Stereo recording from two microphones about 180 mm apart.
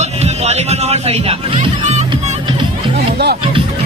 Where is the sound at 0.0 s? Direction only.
35° right (ahead or behind).